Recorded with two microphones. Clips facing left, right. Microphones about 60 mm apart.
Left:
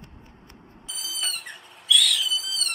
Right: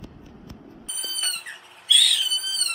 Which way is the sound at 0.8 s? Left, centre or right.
Centre.